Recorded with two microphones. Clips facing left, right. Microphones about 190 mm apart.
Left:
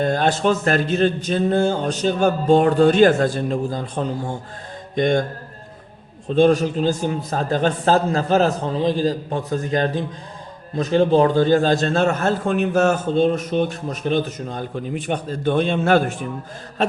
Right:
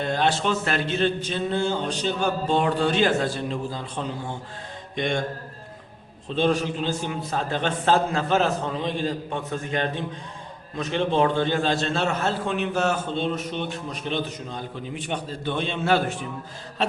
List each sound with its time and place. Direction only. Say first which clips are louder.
0.0 s a man's voice: left 5 dB; 45° left (ahead or behind)
6.2 s a man's voice: left 7 dB; 45° left (ahead or behind)